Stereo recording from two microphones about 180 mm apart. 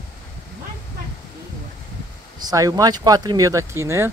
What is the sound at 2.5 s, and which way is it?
Speech, 20° right (ahead or behind).